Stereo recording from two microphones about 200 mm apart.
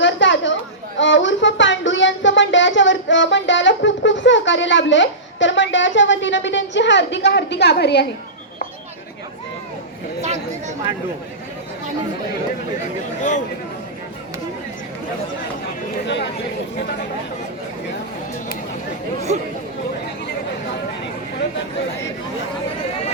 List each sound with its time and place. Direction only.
0.0 s chatter: 70° left (ahead or behind)
0.9 s speech: 65° left (ahead or behind)
10.2 s chatter: 35° right (ahead or behind)
16.0 s speech: 60° left (ahead or behind)